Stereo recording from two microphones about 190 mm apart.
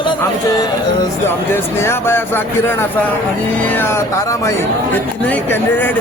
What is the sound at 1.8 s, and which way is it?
Speech, 15° left (ahead or behind).